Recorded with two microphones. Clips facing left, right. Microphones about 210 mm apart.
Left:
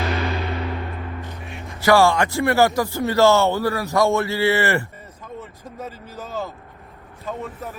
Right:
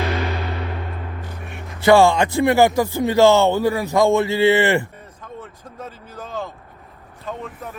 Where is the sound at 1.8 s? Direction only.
20° right (ahead or behind).